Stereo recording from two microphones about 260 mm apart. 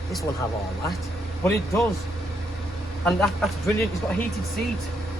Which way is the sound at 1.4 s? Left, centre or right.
Centre.